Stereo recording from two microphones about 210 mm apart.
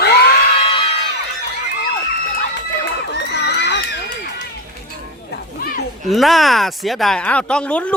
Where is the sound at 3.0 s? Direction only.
55° left (ahead or behind).